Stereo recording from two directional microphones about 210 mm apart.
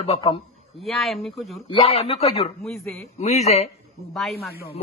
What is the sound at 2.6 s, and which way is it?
Speech, centre (ahead or behind).